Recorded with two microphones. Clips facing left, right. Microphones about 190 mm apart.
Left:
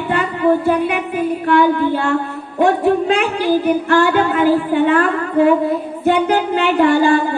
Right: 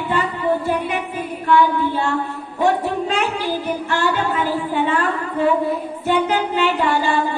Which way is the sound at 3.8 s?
55° left (ahead or behind).